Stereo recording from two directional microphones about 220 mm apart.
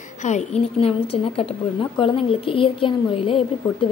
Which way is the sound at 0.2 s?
30° left (ahead or behind).